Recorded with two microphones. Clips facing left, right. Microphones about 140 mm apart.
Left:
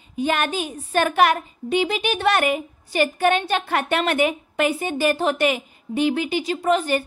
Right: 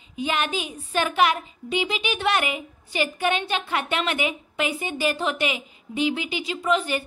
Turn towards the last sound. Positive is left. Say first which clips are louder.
# left 4 dB
turn(degrees=45)  # may be behind; listen again after turning